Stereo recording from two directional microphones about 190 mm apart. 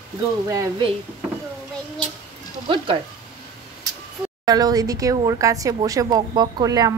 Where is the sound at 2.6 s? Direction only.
25° right (ahead or behind).